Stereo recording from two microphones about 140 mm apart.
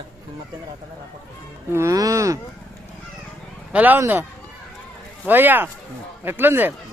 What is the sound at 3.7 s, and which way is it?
Speech, 10° right (ahead or behind).